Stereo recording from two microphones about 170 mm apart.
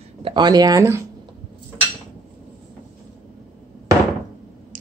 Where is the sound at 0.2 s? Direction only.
25° right (ahead or behind).